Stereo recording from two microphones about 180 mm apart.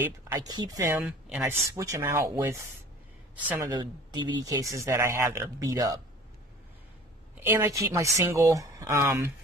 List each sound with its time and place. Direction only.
0.3 s speech: 20° right (ahead or behind)
7.4 s speech: 10° right (ahead or behind)